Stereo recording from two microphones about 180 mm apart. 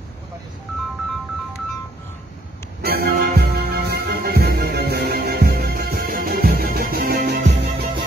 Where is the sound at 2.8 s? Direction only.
60° right (ahead or behind).